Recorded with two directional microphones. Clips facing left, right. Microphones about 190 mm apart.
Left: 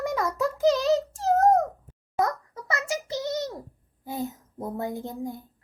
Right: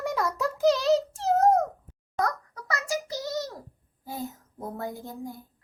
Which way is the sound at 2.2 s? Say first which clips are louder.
Left 2 dB; 20° left (ahead or behind).